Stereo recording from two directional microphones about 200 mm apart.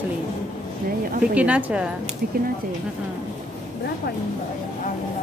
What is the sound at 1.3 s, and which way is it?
Speech, 5° right (ahead or behind).